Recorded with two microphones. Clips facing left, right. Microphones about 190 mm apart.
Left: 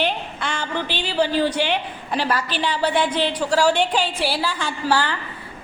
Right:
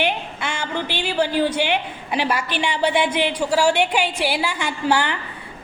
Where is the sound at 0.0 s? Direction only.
10° right (ahead or behind).